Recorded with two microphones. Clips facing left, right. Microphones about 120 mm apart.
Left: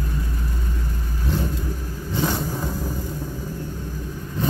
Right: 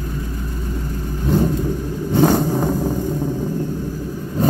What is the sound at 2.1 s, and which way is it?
Vehicle, 50° right (ahead or behind).